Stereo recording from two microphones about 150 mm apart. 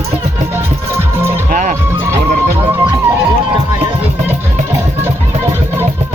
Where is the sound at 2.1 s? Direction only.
20° right (ahead or behind).